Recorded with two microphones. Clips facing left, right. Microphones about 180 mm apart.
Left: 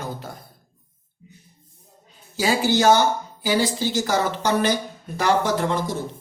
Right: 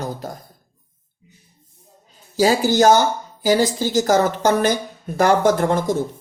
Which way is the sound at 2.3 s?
40° right (ahead or behind).